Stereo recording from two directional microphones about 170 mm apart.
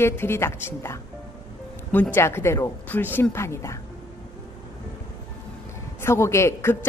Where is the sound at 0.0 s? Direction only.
15° left (ahead or behind).